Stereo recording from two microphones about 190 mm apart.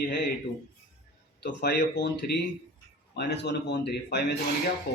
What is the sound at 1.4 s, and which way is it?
Speech, 65° left (ahead or behind).